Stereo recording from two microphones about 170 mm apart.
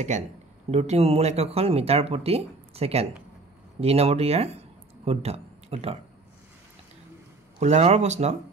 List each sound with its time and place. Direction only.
0.1 s speech: 45° right (ahead or behind)
7.6 s speech: 40° right (ahead or behind)